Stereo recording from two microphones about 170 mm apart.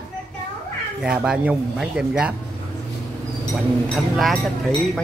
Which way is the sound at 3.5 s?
Centre (ahead or behind).